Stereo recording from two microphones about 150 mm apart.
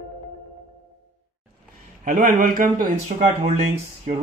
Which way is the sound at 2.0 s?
60° right (ahead or behind).